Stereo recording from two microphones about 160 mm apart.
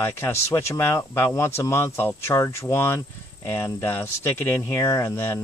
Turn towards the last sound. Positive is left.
turn(degrees=15)  # may be behind; listen again after turning